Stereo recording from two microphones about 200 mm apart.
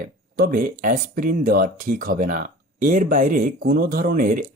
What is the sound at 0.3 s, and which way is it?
Speech, 45° right (ahead or behind).